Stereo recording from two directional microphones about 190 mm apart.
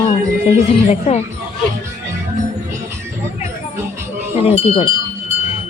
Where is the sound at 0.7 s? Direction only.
30° left (ahead or behind).